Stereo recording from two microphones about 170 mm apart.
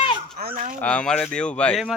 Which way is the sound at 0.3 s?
60° right (ahead or behind).